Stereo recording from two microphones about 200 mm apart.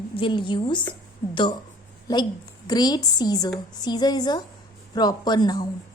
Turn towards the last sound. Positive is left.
turn(degrees=20)  # may be behind; listen again after turning